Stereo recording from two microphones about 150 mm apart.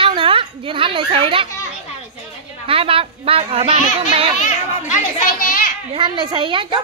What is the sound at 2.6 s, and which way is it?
Speech, 40° right (ahead or behind).